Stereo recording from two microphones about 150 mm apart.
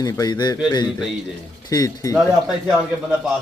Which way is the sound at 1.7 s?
25° left (ahead or behind).